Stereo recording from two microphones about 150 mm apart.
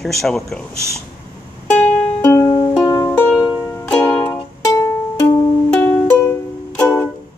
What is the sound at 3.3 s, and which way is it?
Music, 5° right (ahead or behind).